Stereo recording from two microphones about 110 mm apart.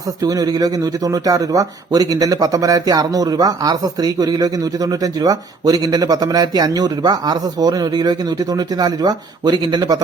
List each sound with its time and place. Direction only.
0.2 s speech: 35° right (ahead or behind)